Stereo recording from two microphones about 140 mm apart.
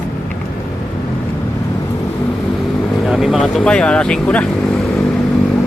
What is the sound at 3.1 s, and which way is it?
Speech, centre (ahead or behind).